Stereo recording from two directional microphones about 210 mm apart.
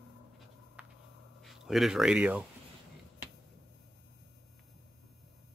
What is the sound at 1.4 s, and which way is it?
Speech, centre (ahead or behind).